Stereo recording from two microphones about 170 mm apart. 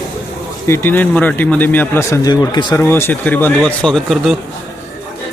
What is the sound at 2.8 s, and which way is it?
A man's voice, 15° left (ahead or behind).